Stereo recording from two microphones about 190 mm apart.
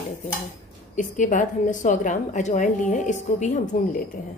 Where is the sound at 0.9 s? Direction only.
40° left (ahead or behind).